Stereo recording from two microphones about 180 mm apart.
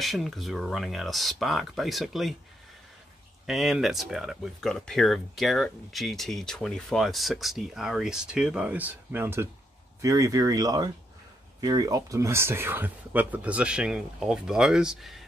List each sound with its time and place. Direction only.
0.0 s speech: centre (ahead or behind)
3.4 s speech: centre (ahead or behind)